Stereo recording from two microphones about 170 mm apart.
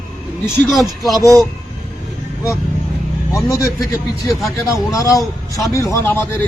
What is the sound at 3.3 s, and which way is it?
A man's voice, 20° left (ahead or behind).